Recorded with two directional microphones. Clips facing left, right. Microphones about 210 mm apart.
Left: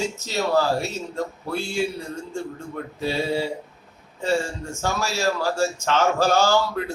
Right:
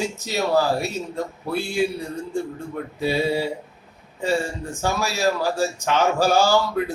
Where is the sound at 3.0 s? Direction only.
15° right (ahead or behind).